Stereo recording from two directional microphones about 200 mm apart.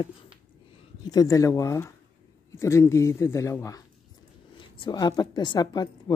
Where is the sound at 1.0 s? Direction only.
15° left (ahead or behind).